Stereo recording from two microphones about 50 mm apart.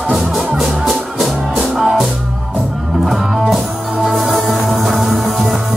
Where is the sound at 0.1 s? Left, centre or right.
Centre.